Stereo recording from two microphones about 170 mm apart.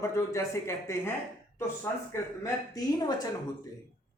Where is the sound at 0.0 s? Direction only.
15° left (ahead or behind).